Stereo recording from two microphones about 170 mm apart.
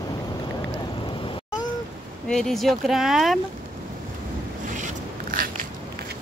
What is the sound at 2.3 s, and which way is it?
Speech, centre (ahead or behind).